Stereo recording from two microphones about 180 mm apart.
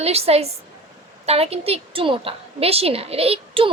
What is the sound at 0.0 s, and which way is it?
A woman's voice, 35° right (ahead or behind).